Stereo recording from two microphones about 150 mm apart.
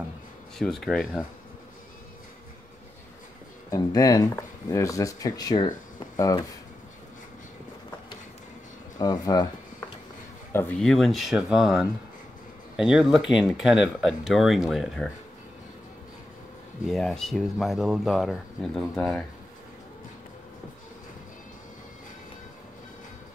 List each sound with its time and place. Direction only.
0.6 s speech: centre (ahead or behind)
3.7 s speech: 25° left (ahead or behind)
8.9 s speech: 25° left (ahead or behind)
10.8 s speech: centre (ahead or behind)
16.8 s speech: centre (ahead or behind)